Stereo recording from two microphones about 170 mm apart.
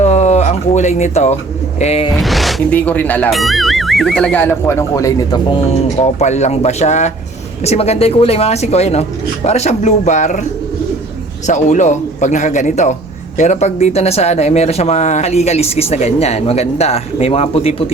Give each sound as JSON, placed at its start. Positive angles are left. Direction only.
{"t": 0.0, "sound": "a sound", "side_deg": 40}
{"t": 1.8, "sound": "speech", "side_deg": 35}
{"t": 2.1, "sound": "speech", "side_deg": 0}
{"t": 6.0, "sound": "speech", "side_deg": 40}
{"t": 11.4, "sound": "a man's voice", "side_deg": 45}